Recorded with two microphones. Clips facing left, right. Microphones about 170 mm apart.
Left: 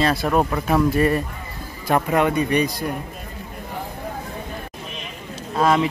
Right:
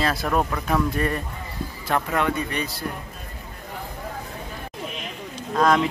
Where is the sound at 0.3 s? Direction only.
20° left (ahead or behind).